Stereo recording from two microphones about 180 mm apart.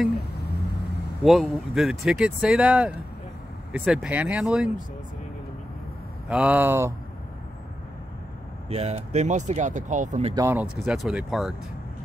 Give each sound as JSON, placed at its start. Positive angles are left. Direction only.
{"t": 0.4, "sound": "vehicle", "side_deg": 65}
{"t": 1.2, "sound": "speech", "side_deg": 0}
{"t": 6.2, "sound": "speech", "side_deg": -5}
{"t": 8.6, "sound": "speech", "side_deg": -35}
{"t": 10.3, "sound": "speech", "side_deg": -15}
{"t": 10.9, "sound": "speech", "side_deg": 0}